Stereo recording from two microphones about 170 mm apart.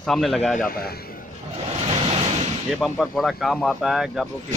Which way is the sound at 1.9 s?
35° right (ahead or behind).